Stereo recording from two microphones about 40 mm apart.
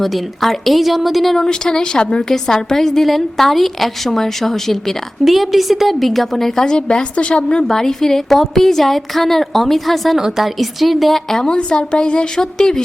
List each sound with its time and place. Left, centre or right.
0.0 s a woman's voice: centre
1.4 s a woman's voice: centre
5.2 s a woman's voice: centre
6.7 s a woman's voice: left
7.4 s a woman's voice: centre
10.2 s a woman's voice: centre
11.4 s a woman's voice: left